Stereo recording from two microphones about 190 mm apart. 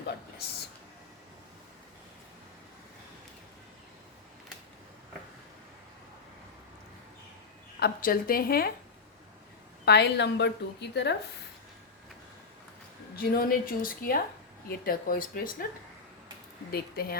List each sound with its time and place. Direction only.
7.8 s speech: 55° left (ahead or behind)
9.8 s a woman's voice: 60° left (ahead or behind)
13.1 s speech: 50° left (ahead or behind)
16.7 s speech: 55° left (ahead or behind)